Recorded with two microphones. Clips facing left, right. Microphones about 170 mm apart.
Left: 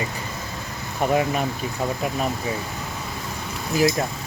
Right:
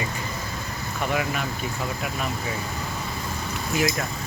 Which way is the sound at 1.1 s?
35° left (ahead or behind).